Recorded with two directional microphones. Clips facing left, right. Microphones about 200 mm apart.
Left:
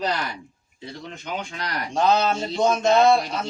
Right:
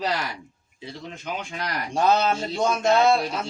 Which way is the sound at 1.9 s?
10° right (ahead or behind).